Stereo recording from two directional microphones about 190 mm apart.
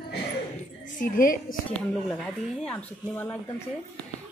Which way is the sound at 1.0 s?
45° left (ahead or behind).